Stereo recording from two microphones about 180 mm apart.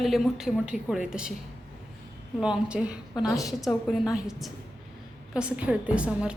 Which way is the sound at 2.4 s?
5° right (ahead or behind).